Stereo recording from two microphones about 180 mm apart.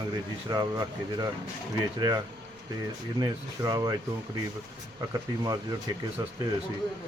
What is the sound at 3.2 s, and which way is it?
Speech, 20° right (ahead or behind).